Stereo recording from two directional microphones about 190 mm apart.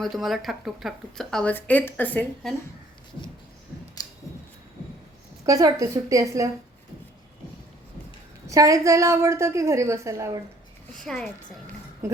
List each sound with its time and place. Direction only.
0.0 s speech: centre (ahead or behind)
5.5 s a woman's voice: 15° right (ahead or behind)
8.4 s a woman's voice: 15° right (ahead or behind)
10.9 s speech: centre (ahead or behind)